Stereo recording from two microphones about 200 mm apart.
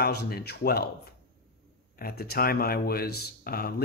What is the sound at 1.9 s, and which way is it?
Speech, 50° left (ahead or behind).